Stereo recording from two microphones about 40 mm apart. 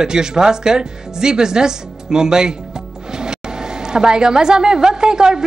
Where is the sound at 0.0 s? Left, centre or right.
Centre.